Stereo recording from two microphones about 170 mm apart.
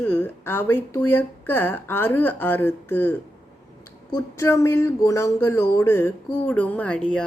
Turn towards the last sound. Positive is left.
turn(degrees=5)  # may be behind; listen again after turning